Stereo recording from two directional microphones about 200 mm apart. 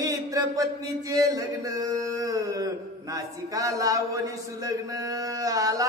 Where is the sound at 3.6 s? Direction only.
15° right (ahead or behind).